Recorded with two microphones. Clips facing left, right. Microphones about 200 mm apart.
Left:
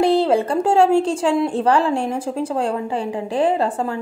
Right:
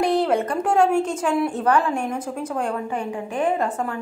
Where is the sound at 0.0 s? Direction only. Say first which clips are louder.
Left 4 dB; 30° left (ahead or behind).